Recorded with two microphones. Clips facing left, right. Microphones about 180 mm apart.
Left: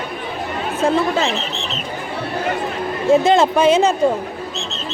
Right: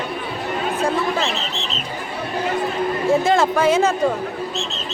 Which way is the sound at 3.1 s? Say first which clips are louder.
Left 5 dB; 20° left (ahead or behind).